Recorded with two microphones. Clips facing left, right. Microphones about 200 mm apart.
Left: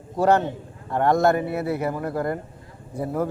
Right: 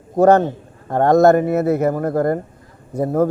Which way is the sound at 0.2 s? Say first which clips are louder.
Right 7 dB; 45° right (ahead or behind).